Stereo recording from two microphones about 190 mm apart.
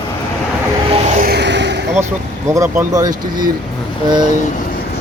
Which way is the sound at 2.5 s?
15° right (ahead or behind).